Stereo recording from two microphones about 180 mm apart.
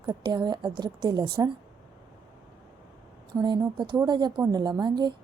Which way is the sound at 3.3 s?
25° right (ahead or behind).